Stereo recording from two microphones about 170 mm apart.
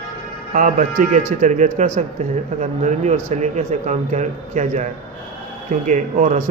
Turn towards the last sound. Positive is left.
turn(degrees=-45)  # may be behind; listen again after turning